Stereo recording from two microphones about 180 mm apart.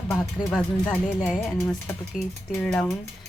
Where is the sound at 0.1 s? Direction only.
10° left (ahead or behind).